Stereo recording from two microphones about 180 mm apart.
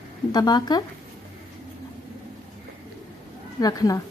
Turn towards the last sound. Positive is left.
turn(degrees=20)  # may be behind; listen again after turning